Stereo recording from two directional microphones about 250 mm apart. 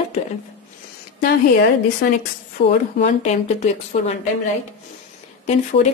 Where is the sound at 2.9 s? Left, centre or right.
Left.